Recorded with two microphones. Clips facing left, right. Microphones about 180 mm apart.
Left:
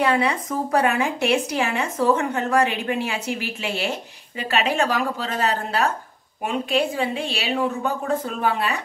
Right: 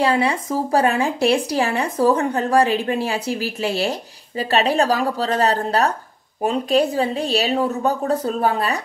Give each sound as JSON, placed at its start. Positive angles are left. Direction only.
{"t": 0.0, "sound": "speech", "side_deg": -30}